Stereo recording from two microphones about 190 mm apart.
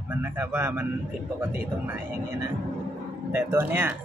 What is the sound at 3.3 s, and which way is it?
Speech, 15° right (ahead or behind).